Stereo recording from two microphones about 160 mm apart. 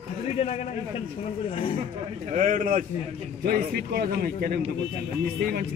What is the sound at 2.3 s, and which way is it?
Speech, 55° right (ahead or behind).